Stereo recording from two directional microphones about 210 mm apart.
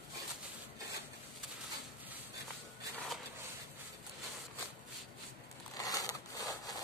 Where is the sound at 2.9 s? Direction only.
Centre (ahead or behind).